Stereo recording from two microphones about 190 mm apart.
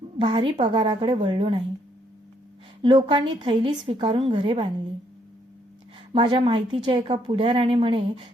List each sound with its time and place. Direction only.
0.2 s a woman's voice: 30° right (ahead or behind)
2.8 s a woman's voice: 25° right (ahead or behind)
6.1 s a woman's voice: 25° right (ahead or behind)